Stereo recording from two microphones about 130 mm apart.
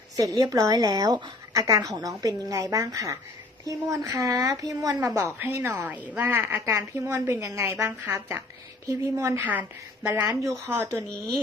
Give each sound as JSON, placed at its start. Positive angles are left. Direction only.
{"t": 0.2, "sound": "a woman's voice", "side_deg": -25}